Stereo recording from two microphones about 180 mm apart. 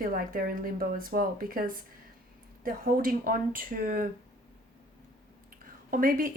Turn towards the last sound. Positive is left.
turn(degrees=-50)  # may be behind; listen again after turning